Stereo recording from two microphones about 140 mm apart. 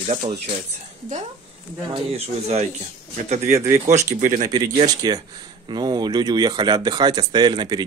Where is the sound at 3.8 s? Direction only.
60° right (ahead or behind).